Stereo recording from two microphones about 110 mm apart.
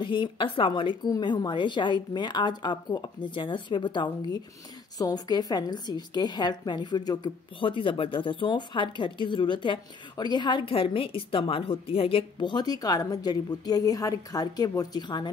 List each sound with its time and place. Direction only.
0.0 s speech: 45° left (ahead or behind)
4.9 s a woman's voice: 35° left (ahead or behind)